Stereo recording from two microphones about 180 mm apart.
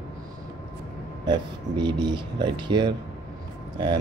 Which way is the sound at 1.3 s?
25° right (ahead or behind).